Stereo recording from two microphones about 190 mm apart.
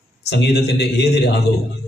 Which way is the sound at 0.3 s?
60° left (ahead or behind).